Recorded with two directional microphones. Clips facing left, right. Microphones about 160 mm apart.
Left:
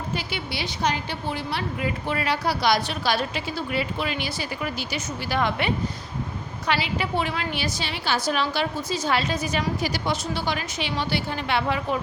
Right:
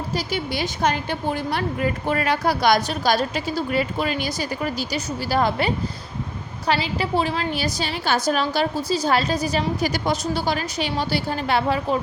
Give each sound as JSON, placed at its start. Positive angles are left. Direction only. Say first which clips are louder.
{"t": 0.1, "sound": "a woman's voice", "louder": "right 7 dB", "side_deg": -40}